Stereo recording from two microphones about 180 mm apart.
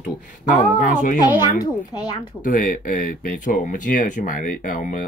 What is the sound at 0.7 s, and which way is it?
Speech, 45° left (ahead or behind).